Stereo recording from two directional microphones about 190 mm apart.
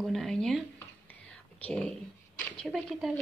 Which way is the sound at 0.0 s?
Centre (ahead or behind).